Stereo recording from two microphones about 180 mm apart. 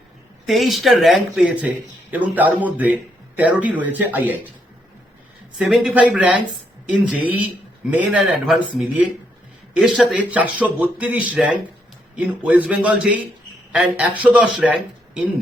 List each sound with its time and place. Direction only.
0.4 s a man's voice: centre (ahead or behind)
5.5 s a man's voice: 5° right (ahead or behind)